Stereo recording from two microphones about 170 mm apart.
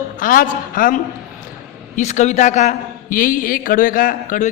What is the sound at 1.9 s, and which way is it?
A man's voice, 45° left (ahead or behind).